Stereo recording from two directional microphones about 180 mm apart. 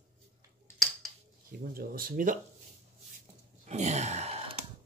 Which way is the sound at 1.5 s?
50° right (ahead or behind).